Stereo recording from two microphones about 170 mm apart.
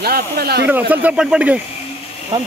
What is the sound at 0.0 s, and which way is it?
Speech, 65° right (ahead or behind).